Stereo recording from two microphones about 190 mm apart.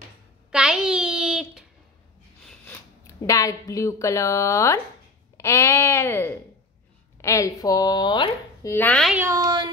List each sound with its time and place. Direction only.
0.5 s a sound: 5° right (ahead or behind)
2.4 s speech: 15° left (ahead or behind)
8.7 s speech: 5° left (ahead or behind)
9.1 s speech: 15° right (ahead or behind)